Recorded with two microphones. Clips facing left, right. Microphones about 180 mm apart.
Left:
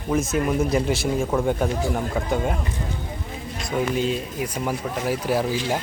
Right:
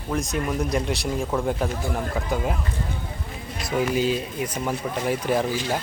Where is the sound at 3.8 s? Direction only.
5° right (ahead or behind).